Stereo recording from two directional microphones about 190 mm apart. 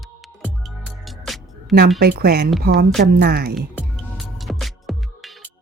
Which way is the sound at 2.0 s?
55° right (ahead or behind).